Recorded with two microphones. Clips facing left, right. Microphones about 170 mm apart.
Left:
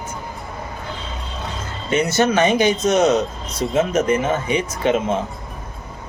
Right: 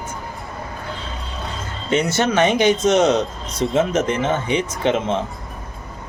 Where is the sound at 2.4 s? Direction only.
20° right (ahead or behind).